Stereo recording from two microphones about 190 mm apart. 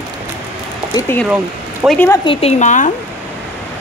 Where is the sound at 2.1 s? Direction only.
25° left (ahead or behind).